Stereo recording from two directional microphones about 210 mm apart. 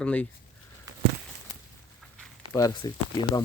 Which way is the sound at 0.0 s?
5° left (ahead or behind).